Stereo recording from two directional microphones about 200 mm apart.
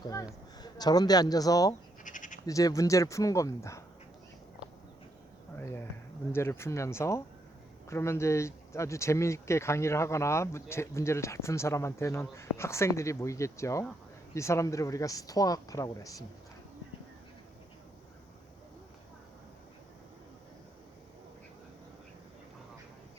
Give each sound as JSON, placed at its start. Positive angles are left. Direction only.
{"t": 0.0, "sound": "speech", "side_deg": 15}
{"t": 2.0, "sound": "bleat", "side_deg": 40}
{"t": 2.5, "sound": "speech", "side_deg": 15}
{"t": 6.3, "sound": "speech", "side_deg": 10}